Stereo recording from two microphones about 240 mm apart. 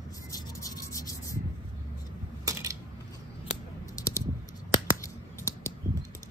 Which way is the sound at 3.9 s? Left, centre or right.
Centre.